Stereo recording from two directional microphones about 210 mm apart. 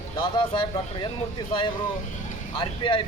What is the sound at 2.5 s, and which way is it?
Speech, 25° left (ahead or behind).